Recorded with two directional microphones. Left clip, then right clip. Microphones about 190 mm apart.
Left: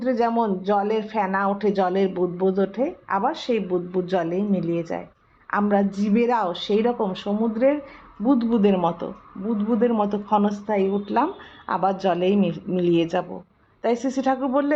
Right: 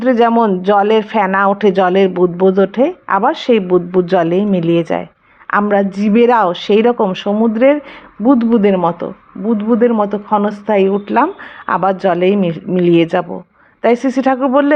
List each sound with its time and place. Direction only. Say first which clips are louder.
0.0 s speech: right 10 dB; 35° right (ahead or behind)